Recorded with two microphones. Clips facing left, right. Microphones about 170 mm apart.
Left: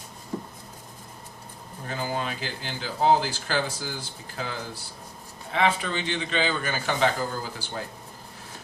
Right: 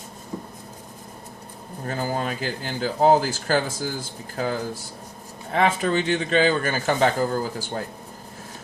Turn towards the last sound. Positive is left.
turn(degrees=-45)  # may be behind; listen again after turning